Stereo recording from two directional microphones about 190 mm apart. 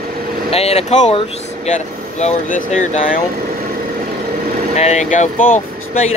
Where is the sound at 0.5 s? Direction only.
30° left (ahead or behind).